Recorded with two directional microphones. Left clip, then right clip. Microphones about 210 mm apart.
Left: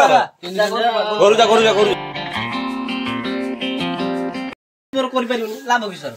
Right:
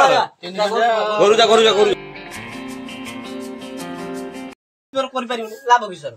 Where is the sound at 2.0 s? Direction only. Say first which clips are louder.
Left 9 dB; centre (ahead or behind).